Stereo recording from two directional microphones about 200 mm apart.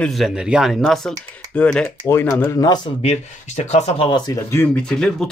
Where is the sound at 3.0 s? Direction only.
30° left (ahead or behind); by 5.2 s 5° left (ahead or behind).